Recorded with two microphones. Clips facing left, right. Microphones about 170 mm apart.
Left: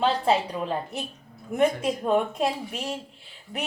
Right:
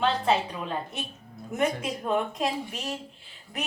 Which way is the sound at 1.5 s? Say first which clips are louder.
Left 5 dB; 30° left (ahead or behind).